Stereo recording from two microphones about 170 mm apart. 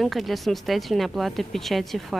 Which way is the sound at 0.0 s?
Centre (ahead or behind).